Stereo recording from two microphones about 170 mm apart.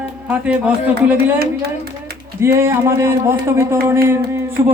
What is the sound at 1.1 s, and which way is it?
Speech, 70° right (ahead or behind).